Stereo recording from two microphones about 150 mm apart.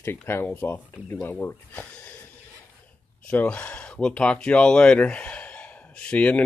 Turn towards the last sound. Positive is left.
turn(degrees=10)  # may be behind; listen again after turning